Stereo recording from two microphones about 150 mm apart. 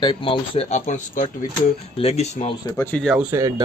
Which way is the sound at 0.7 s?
55° left (ahead or behind).